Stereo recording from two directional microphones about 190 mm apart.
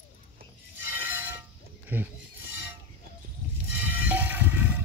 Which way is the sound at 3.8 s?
10° right (ahead or behind).